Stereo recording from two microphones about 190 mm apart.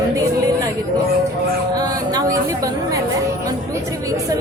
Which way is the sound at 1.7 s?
20° right (ahead or behind).